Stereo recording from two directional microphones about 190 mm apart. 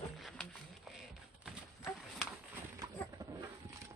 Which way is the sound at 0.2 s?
Centre (ahead or behind).